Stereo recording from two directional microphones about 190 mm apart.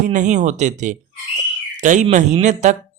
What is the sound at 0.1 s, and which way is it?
Speech, 40° right (ahead or behind).